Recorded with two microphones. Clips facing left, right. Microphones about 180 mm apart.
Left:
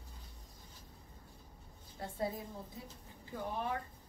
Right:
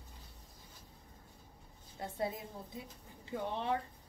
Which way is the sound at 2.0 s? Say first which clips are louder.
Right 1 dB; 20° right (ahead or behind).